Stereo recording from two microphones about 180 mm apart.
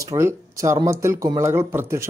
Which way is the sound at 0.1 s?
15° right (ahead or behind).